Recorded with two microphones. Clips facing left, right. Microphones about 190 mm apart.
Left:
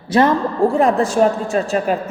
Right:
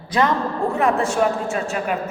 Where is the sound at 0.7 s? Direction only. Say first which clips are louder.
Left 4 dB; 35° left (ahead or behind).